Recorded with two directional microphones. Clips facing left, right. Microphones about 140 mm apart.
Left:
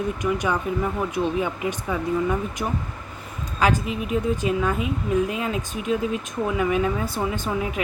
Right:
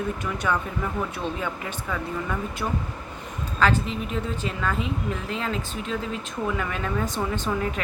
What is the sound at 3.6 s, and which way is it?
Speech, 10° left (ahead or behind).